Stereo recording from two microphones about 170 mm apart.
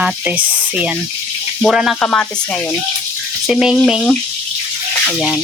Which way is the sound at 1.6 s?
Centre (ahead or behind).